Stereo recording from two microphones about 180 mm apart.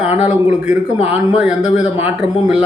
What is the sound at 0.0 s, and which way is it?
A man's voice, 10° right (ahead or behind).